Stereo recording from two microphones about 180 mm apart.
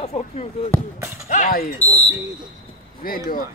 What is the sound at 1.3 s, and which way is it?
Speech, 45° left (ahead or behind).